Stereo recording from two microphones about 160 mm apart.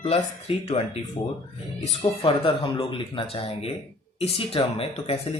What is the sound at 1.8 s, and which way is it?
Speech, 40° left (ahead or behind).